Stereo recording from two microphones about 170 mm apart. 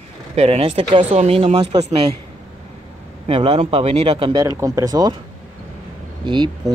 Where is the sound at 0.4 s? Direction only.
35° right (ahead or behind).